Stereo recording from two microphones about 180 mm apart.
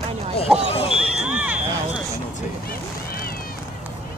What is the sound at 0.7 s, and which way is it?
Basketball bounce, 30° left (ahead or behind).